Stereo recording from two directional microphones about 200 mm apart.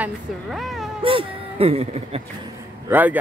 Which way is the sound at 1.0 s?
25° right (ahead or behind).